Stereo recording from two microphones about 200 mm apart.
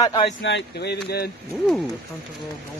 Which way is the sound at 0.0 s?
25° left (ahead or behind).